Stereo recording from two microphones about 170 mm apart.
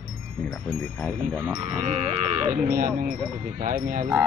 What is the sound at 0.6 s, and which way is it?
Speech, centre (ahead or behind).